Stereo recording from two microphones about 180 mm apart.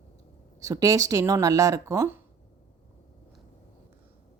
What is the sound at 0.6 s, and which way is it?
Speech, 20° right (ahead or behind).